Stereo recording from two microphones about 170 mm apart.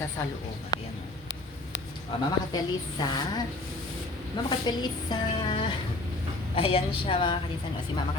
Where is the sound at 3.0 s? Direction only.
25° left (ahead or behind).